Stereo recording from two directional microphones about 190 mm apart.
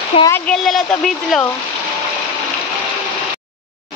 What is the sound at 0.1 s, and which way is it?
Speech, 30° left (ahead or behind).